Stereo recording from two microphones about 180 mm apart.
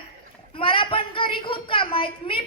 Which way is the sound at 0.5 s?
30° left (ahead or behind).